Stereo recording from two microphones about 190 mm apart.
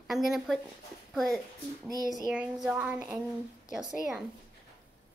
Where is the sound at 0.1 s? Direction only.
Centre (ahead or behind).